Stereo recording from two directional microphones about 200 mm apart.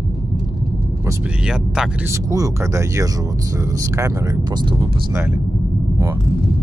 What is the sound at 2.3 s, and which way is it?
Speech, 15° right (ahead or behind).